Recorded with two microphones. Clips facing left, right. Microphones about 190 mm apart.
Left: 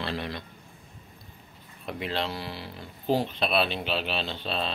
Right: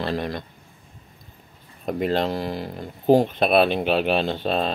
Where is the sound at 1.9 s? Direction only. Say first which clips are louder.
Right 9 dB; 45° right (ahead or behind).